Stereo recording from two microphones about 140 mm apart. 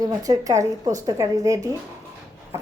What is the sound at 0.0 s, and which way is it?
Speech, 25° right (ahead or behind).